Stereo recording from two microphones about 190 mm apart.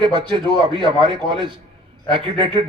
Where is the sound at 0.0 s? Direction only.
25° right (ahead or behind).